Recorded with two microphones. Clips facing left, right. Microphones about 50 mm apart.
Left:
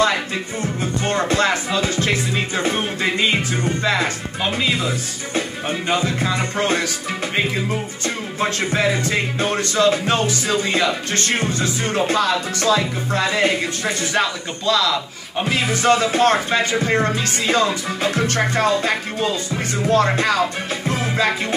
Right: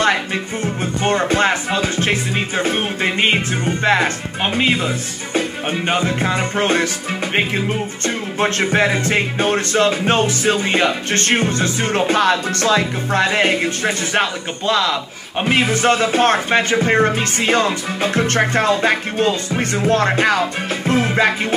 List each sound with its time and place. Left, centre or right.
0.6 s music: right
7.3 s music: right
9.4 s music: right
14.7 s speech: right
15.6 s music: right
20.9 s music: right